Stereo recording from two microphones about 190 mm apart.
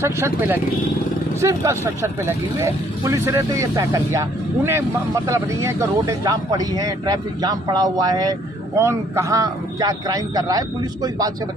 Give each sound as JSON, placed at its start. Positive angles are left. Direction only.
{"t": 0.0, "sound": "speech", "side_deg": -10}